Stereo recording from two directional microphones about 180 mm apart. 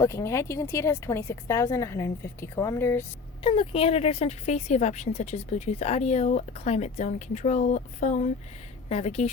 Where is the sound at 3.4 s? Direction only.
30° left (ahead or behind).